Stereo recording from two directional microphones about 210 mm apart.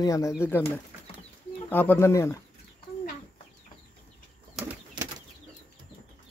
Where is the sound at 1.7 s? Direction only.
10° left (ahead or behind).